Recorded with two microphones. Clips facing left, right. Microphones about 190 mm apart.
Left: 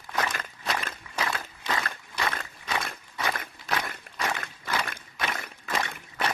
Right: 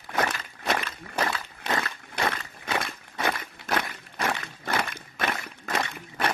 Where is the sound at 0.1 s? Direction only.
60° right (ahead or behind).